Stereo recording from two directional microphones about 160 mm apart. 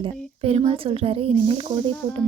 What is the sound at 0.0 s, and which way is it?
Speech, 40° right (ahead or behind).